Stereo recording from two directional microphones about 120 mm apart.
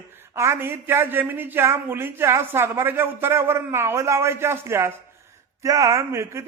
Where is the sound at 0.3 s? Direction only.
20° right (ahead or behind).